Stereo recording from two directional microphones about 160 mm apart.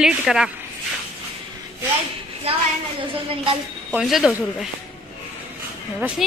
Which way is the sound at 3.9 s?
5° right (ahead or behind).